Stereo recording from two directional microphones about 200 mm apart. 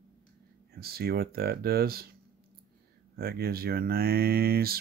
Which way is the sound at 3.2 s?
50° right (ahead or behind).